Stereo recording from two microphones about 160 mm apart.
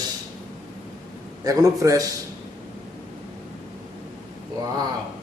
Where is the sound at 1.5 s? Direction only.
20° right (ahead or behind).